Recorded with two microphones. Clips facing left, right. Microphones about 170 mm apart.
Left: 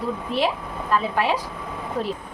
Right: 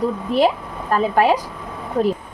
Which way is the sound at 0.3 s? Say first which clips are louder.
Right 7 dB; 45° right (ahead or behind).